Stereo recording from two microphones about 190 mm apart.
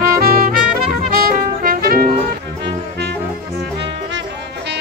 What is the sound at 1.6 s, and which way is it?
Music, 50° right (ahead or behind).